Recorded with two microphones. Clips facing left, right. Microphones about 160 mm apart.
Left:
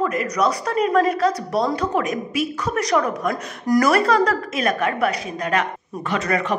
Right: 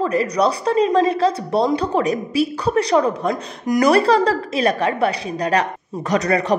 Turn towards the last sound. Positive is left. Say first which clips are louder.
# right 4 dB
turn(degrees=-35)  # may be behind; listen again after turning